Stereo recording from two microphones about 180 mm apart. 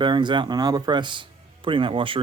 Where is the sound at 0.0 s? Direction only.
25° right (ahead or behind).